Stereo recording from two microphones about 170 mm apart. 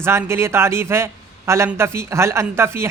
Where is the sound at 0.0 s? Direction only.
15° right (ahead or behind).